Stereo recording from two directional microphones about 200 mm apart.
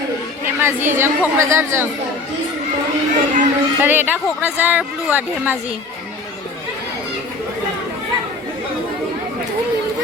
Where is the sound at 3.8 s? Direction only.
10° right (ahead or behind).